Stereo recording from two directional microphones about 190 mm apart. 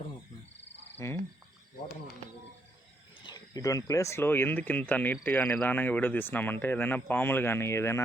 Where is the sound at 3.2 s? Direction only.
20° left (ahead or behind).